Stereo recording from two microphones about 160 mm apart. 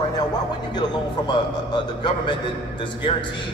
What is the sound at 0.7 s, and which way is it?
A man's voice, 30° left (ahead or behind).